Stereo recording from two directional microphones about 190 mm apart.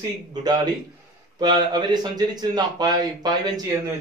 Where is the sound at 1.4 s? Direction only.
20° right (ahead or behind).